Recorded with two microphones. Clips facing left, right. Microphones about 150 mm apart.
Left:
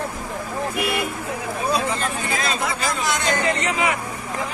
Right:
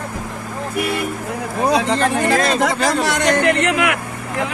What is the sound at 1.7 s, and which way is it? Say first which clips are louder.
Speech: right 7 dB; 70° right (ahead or behind).